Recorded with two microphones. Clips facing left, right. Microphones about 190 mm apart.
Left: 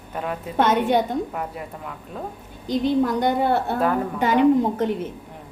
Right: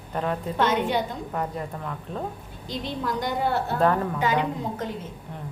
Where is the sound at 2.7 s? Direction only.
55° left (ahead or behind).